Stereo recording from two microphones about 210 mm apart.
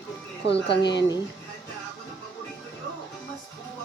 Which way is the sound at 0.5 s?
55° left (ahead or behind).